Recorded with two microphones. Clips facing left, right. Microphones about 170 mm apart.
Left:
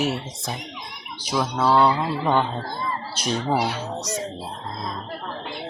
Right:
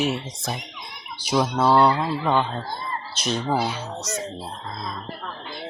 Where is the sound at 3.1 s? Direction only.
10° left (ahead or behind).